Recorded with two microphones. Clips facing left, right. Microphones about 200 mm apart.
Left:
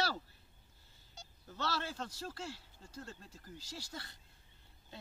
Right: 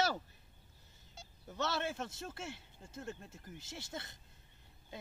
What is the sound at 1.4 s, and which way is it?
A man's voice, 20° right (ahead or behind).